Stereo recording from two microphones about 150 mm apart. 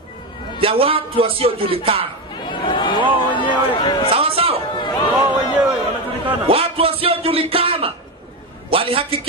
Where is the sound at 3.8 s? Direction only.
30° left (ahead or behind).